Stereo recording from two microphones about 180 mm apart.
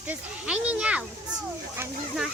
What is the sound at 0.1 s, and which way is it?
Speech, 5° right (ahead or behind).